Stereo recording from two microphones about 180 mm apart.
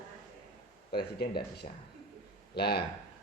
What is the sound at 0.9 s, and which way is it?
Speech, 65° left (ahead or behind).